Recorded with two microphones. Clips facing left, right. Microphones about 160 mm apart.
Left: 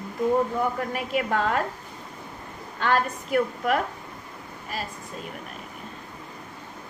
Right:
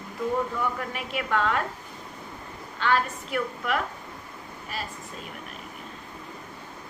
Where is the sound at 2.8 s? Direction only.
45° left (ahead or behind).